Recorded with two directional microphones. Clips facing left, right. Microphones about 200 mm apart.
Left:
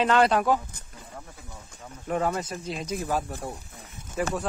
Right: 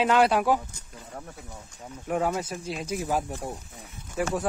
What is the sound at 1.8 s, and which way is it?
Speech, 10° right (ahead or behind).